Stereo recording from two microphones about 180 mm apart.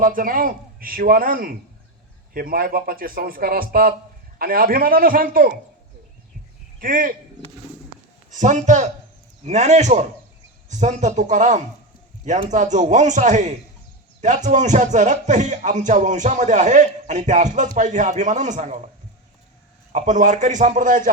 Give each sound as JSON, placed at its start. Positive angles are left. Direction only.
{"t": 0.0, "sound": "a man's voice", "side_deg": -50}
{"t": 6.7, "sound": "speech", "side_deg": -50}
{"t": 8.3, "sound": "speech", "side_deg": -40}
{"t": 19.9, "sound": "a man's voice", "side_deg": -40}